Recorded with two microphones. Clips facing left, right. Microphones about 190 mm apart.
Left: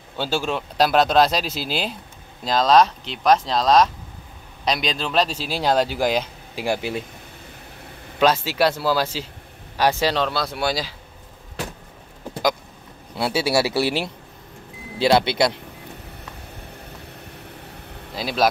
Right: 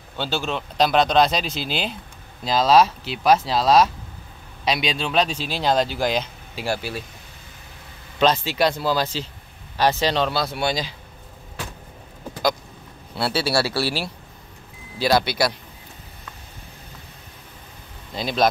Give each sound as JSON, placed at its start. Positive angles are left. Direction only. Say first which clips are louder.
{"t": 0.2, "sound": "speech", "louder": "left 2 dB", "side_deg": 10}
{"t": 8.2, "sound": "speech", "louder": "left 1 dB", "side_deg": 5}
{"t": 10.1, "sound": "speech", "louder": "right 1 dB", "side_deg": 0}
{"t": 13.1, "sound": "speech", "louder": "left 2 dB", "side_deg": 15}
{"t": 18.1, "sound": "speech", "louder": "even", "side_deg": 5}